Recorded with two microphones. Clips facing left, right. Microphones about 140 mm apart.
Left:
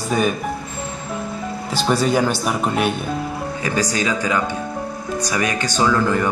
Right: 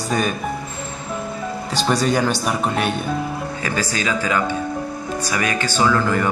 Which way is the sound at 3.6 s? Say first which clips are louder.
Left 3 dB; 20° left (ahead or behind).